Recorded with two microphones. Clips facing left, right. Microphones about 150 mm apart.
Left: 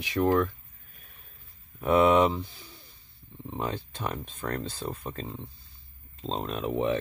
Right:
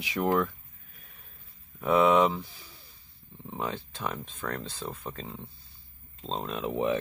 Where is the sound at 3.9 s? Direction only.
15° left (ahead or behind).